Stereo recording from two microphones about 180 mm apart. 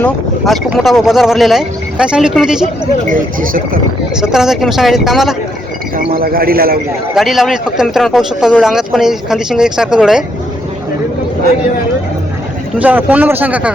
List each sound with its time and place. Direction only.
0.0 s speech: centre (ahead or behind)
3.1 s speech: 50° right (ahead or behind)
4.2 s speech: 5° right (ahead or behind)
6.1 s a man's voice: 55° right (ahead or behind)
7.2 s speech: centre (ahead or behind)
12.8 s speech: 10° right (ahead or behind)